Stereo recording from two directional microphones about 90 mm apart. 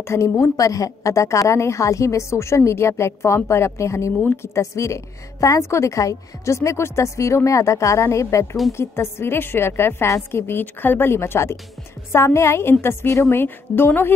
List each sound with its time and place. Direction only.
0.0 s a woman's voice: 35° left (ahead or behind)